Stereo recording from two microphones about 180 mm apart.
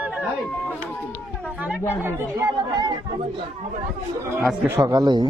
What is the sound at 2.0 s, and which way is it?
Speech, 20° right (ahead or behind).